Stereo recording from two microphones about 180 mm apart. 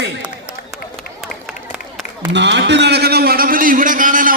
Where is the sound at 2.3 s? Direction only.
75° right (ahead or behind); by 4.3 s 50° right (ahead or behind).